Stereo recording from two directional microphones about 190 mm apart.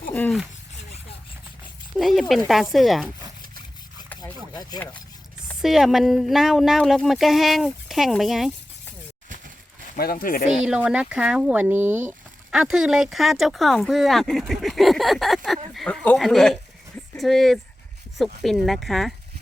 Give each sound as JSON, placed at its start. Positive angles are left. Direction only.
{"t": 0.1, "sound": "a sound", "side_deg": 10}
{"t": 2.0, "sound": "a sound", "side_deg": 0}
{"t": 2.5, "sound": "speech", "side_deg": 0}
{"t": 5.6, "sound": "speech", "side_deg": 0}
{"t": 9.9, "sound": "speech", "side_deg": 50}
{"t": 10.5, "sound": "speech", "side_deg": -5}